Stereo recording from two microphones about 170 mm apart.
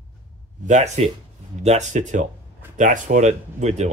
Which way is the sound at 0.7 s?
40° right (ahead or behind).